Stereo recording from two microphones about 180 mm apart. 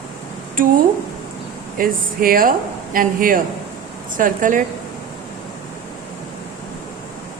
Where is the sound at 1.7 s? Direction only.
55° right (ahead or behind).